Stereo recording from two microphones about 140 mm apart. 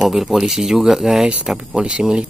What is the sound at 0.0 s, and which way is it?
Speech, centre (ahead or behind).